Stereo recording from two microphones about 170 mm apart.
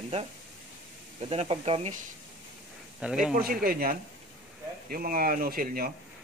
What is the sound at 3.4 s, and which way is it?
Speech, 60° right (ahead or behind).